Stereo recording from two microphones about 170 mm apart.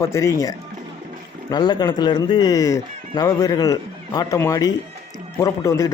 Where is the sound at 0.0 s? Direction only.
15° left (ahead or behind).